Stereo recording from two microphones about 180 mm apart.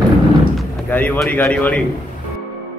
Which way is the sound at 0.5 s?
10° left (ahead or behind).